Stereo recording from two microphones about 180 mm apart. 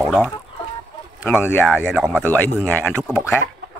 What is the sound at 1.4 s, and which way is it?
Speech, 10° left (ahead or behind).